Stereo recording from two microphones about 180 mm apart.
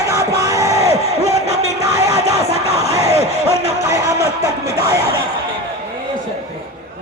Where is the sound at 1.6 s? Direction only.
65° left (ahead or behind).